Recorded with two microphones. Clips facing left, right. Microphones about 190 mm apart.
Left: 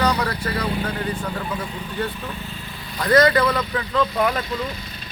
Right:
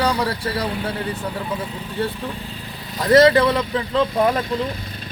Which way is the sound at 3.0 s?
25° right (ahead or behind).